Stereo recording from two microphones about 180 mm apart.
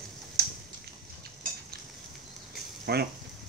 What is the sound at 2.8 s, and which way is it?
Speech, 60° right (ahead or behind).